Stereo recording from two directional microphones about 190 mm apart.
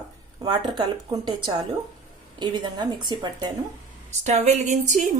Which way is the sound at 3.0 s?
20° right (ahead or behind).